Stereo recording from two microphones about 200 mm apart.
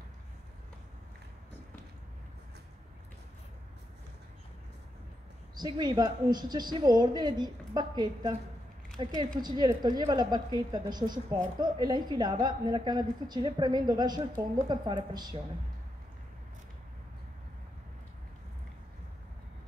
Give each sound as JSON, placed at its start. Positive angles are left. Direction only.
{"t": 5.5, "sound": "a woman's voice", "side_deg": -20}